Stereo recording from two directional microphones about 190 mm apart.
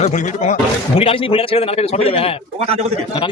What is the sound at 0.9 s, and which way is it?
A man's voice, 30° left (ahead or behind).